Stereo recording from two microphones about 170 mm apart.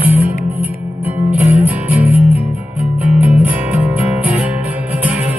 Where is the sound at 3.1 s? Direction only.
10° right (ahead or behind).